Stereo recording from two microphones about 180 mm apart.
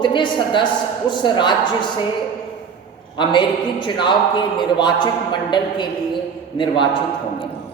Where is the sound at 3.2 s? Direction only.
25° left (ahead or behind).